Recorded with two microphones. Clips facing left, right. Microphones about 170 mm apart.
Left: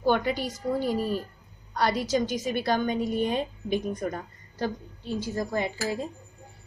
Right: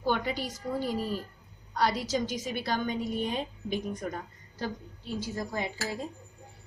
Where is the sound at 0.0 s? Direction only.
60° left (ahead or behind).